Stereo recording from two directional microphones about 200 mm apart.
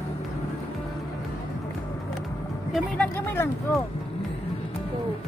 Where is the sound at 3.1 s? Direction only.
10° left (ahead or behind).